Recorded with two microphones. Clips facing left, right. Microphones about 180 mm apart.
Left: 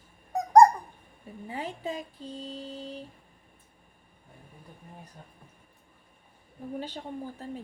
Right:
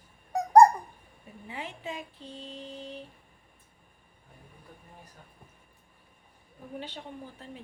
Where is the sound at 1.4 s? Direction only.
40° left (ahead or behind).